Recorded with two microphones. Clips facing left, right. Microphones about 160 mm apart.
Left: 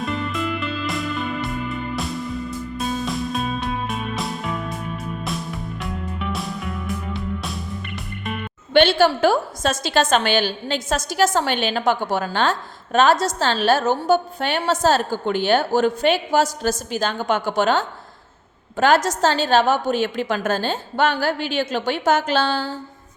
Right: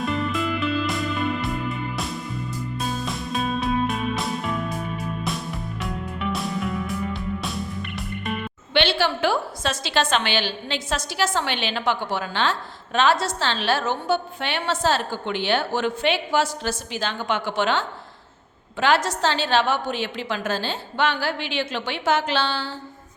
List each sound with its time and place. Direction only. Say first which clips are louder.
0.0 s music: even; centre (ahead or behind)
2.7 s music: left 4 dB; centre (ahead or behind)
5.8 s music: right 1 dB; centre (ahead or behind)
8.7 s a woman's voice: left 6 dB; 45° left (ahead or behind)